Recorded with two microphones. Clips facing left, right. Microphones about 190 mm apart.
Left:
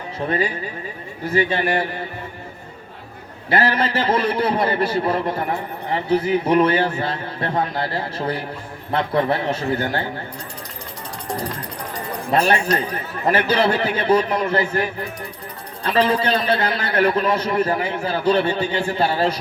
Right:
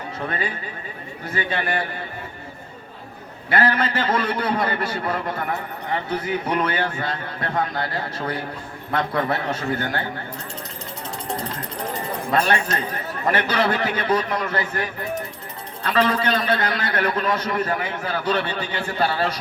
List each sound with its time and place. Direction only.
1.3 s a man's voice: 30° left (ahead or behind)
3.5 s a man's voice: 30° left (ahead or behind)
12.3 s a man's voice: 30° left (ahead or behind)
15.9 s a man's voice: 30° left (ahead or behind)